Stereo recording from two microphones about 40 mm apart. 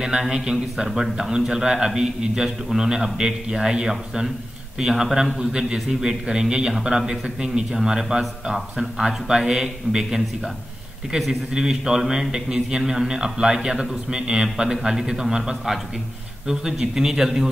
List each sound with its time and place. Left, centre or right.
0.2 s a man's voice: centre
11.5 s a man's voice: centre